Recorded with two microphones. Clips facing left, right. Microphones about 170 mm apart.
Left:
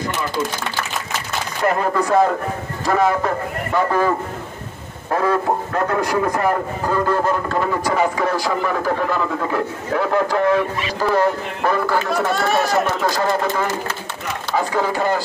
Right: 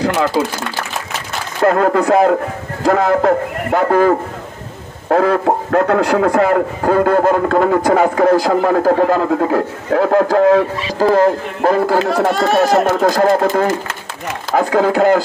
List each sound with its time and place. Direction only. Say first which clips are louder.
0.0 s a sound: right 8 dB; 85° right
1.6 s a man's voice: right 6 dB; 65° right (ahead or behind)
5.1 s a man's voice: right 5 dB; 70° right (ahead or behind); by 11.9 s 45° right (ahead or behind)
11.9 s speech: right 5 dB; 80° right
12.4 s speech: right 6 dB; 45° right (ahead or behind)
14.5 s a man's voice: right 7 dB; 65° right (ahead or behind)